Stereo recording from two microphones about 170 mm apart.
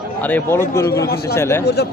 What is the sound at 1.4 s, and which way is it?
Speech, 15° left (ahead or behind).